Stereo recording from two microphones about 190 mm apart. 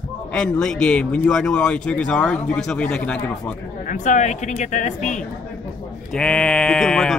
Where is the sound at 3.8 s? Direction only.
40° left (ahead or behind).